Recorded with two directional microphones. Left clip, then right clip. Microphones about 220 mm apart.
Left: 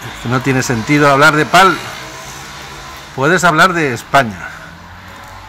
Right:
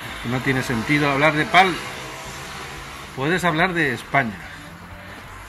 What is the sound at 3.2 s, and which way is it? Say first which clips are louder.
Speech: left 10 dB; 45° left (ahead or behind).